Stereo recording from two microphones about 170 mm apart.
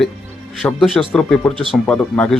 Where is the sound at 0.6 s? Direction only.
15° left (ahead or behind).